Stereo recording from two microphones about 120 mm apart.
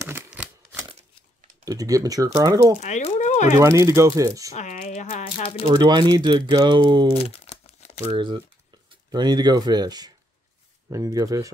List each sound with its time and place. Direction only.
1.6 s speech: 30° right (ahead or behind)
2.8 s speech: 75° left (ahead or behind)
3.5 s speech: 25° right (ahead or behind)
4.6 s a sound: 80° left
5.7 s speech: 35° right (ahead or behind)
7.2 s crumpling: 60° left (ahead or behind)
8.1 s speech: 40° right (ahead or behind)